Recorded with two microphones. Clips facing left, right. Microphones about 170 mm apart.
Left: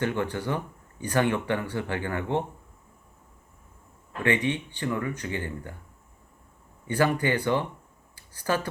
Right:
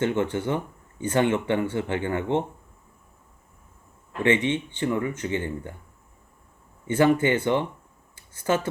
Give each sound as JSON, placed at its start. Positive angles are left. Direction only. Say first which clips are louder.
{"t": 0.0, "sound": "speech", "louder": "right 4 dB", "side_deg": -25}
{"t": 4.2, "sound": "speech", "louder": "right 3 dB", "side_deg": -25}
{"t": 6.8, "sound": "speech", "louder": "right 5 dB", "side_deg": -20}
{"t": 8.1, "sound": "a sound", "louder": "right 3 dB", "side_deg": -25}